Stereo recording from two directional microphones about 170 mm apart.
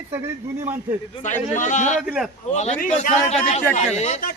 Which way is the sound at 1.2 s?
45° left (ahead or behind).